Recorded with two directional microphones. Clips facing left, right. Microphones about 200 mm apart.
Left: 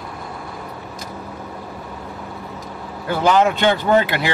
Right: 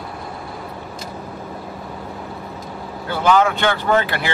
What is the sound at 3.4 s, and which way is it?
Speech, 20° left (ahead or behind).